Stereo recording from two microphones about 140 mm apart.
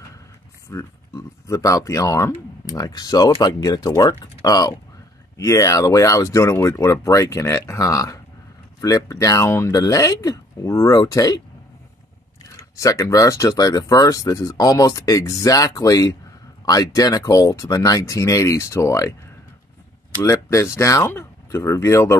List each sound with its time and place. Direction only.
0.7 s speech: 20° left (ahead or behind)
12.7 s speech: 20° left (ahead or behind)
20.2 s speech: 20° left (ahead or behind)